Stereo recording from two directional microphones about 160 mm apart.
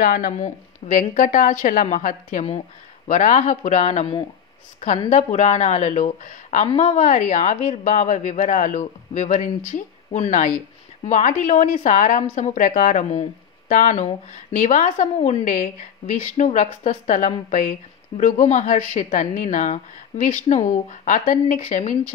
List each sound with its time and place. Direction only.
0.0 s a woman's voice: 60° left (ahead or behind)